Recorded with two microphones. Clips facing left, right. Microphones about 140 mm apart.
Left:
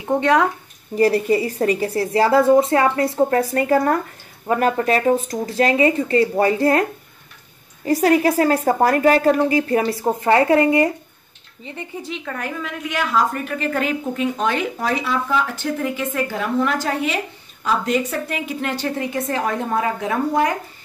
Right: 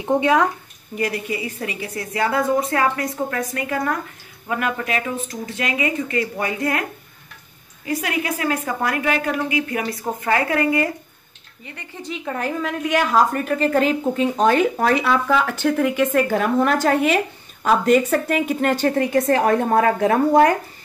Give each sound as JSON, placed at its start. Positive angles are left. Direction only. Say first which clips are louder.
{"t": 0.2, "sound": "speech", "louder": "left 2 dB", "side_deg": -5}
{"t": 0.9, "sound": "a woman's voice", "louder": "left 8 dB", "side_deg": 35}
{"t": 12.0, "sound": "a woman's voice", "louder": "even", "side_deg": 10}
{"t": 12.3, "sound": "a woman's voice", "louder": "right 7 dB", "side_deg": -30}
{"t": 14.9, "sound": "a woman's voice", "louder": "right 3 dB", "side_deg": -65}